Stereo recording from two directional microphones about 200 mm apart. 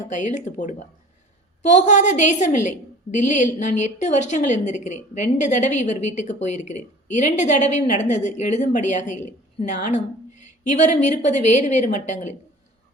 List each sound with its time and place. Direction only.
0.1 s a woman's voice: 35° left (ahead or behind)